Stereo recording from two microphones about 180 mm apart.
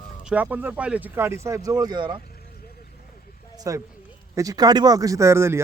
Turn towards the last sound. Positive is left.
turn(degrees=-15)  # may be behind; listen again after turning